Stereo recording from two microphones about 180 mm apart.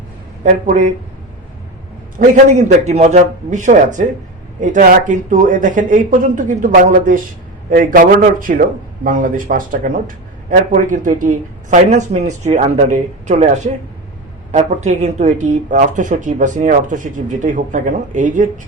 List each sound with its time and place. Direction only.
0.4 s speech: 45° right (ahead or behind)
2.1 s speech: 40° right (ahead or behind)